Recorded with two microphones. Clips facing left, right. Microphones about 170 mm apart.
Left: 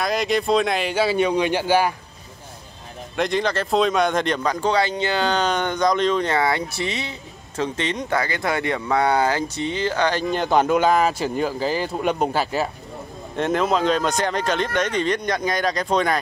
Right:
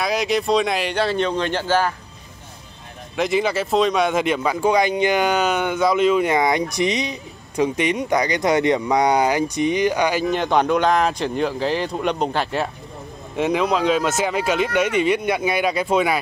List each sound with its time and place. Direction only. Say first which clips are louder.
0.0 s speech: right 1 dB; centre (ahead or behind)
3.2 s speech: right 2 dB; 5° right (ahead or behind)
10.3 s speech: even; centre (ahead or behind)